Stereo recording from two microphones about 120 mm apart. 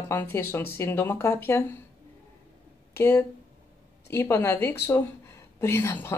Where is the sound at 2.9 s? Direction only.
25° left (ahead or behind).